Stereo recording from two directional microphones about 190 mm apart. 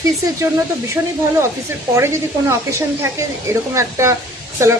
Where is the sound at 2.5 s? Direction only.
15° right (ahead or behind).